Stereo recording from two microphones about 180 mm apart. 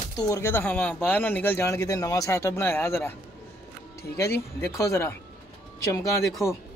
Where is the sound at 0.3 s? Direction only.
10° left (ahead or behind).